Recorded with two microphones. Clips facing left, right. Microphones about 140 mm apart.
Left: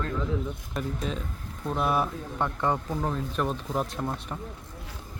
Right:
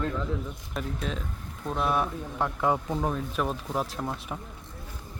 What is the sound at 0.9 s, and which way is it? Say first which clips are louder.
Speech: left 1 dB; centre (ahead or behind).